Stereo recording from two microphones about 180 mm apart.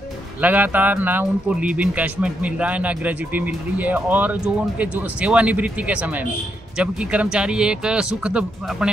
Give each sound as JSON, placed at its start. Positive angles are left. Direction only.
{"t": 0.4, "sound": "speech", "side_deg": -10}